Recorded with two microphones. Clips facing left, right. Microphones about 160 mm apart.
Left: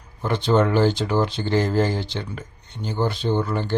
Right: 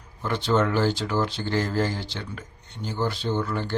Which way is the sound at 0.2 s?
20° left (ahead or behind).